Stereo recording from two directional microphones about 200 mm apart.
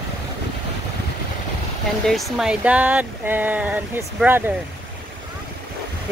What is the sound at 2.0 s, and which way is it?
Speech, centre (ahead or behind).